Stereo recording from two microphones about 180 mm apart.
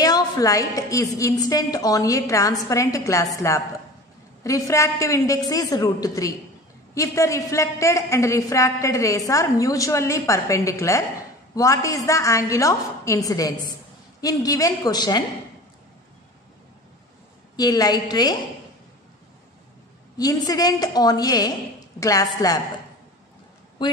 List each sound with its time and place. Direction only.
0.0 s a woman's voice: 20° left (ahead or behind)
4.4 s a woman's voice: 20° left (ahead or behind)
17.6 s a woman's voice: 20° left (ahead or behind)
20.2 s a woman's voice: 20° left (ahead or behind)
23.8 s speech: 25° left (ahead or behind)